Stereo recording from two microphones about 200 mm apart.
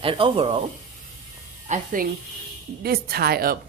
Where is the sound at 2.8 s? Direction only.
50° right (ahead or behind).